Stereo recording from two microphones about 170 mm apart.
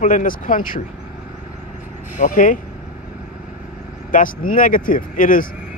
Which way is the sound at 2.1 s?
50° left (ahead or behind).